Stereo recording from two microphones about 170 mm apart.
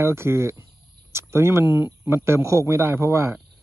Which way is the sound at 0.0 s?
15° right (ahead or behind).